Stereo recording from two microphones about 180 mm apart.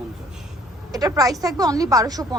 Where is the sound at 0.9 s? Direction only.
20° right (ahead or behind).